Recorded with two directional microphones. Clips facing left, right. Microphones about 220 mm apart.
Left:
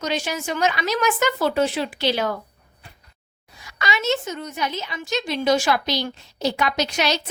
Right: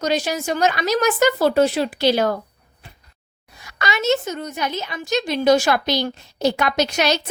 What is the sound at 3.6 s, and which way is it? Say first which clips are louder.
A woman's voice: right 3 dB; 45° right (ahead or behind).